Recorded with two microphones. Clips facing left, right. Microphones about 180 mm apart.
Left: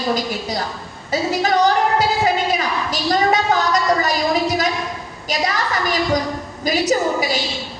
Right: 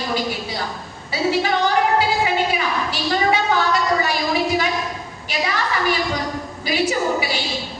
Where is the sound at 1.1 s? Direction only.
40° left (ahead or behind).